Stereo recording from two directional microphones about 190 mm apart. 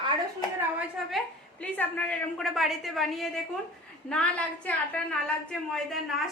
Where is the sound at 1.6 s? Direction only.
10° left (ahead or behind).